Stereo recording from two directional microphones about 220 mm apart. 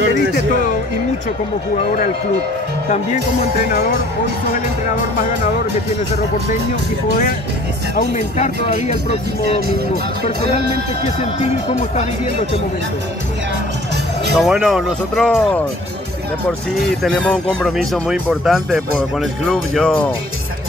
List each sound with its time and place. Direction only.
7.9 s speech: 30° left (ahead or behind)
14.3 s speech: 5° right (ahead or behind)